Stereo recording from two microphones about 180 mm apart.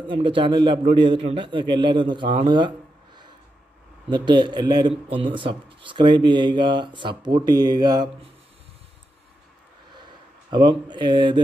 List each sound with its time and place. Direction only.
0.0 s speech: 30° right (ahead or behind)
4.1 s speech: 25° right (ahead or behind)
10.5 s speech: 25° right (ahead or behind)